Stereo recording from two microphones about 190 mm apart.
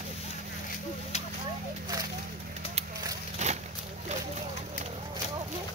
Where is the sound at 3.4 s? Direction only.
35° right (ahead or behind).